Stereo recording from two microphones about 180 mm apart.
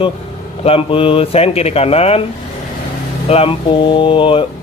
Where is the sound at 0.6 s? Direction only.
30° left (ahead or behind).